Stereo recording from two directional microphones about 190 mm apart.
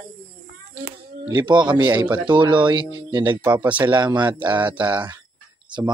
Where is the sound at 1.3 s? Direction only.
25° right (ahead or behind).